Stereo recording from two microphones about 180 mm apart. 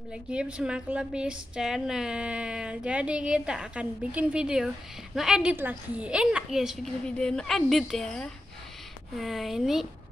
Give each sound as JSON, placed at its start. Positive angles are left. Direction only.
{"t": 0.1, "sound": "a woman's voice", "side_deg": -5}